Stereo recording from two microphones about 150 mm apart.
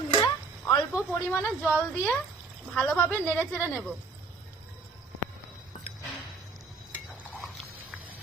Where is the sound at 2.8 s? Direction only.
10° left (ahead or behind).